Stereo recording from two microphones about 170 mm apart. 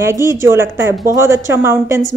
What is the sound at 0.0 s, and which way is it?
Speech, 15° right (ahead or behind).